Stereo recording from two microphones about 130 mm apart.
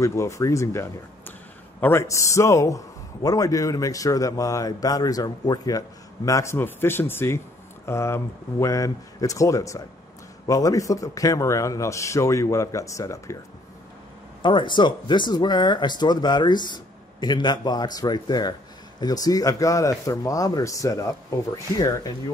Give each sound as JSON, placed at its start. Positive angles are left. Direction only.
{"t": 0.0, "sound": "a man's voice", "side_deg": 20}
{"t": 14.4, "sound": "a man's voice", "side_deg": 40}